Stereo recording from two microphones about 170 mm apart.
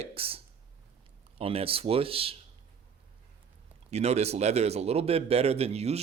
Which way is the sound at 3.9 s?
40° right (ahead or behind).